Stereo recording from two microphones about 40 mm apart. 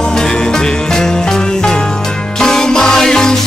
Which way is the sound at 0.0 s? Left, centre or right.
Centre.